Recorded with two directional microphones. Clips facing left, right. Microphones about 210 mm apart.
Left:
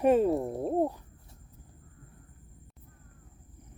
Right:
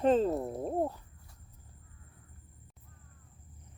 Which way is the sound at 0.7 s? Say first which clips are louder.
Left 5 dB; 15° left (ahead or behind).